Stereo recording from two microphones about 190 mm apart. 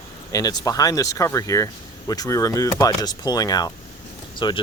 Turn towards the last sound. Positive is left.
turn(degrees=25)  # may be behind; listen again after turning